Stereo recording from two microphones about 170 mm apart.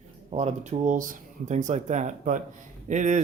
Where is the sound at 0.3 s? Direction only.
45° right (ahead or behind).